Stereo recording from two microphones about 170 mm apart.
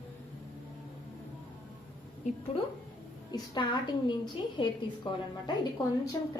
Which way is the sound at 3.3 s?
25° left (ahead or behind).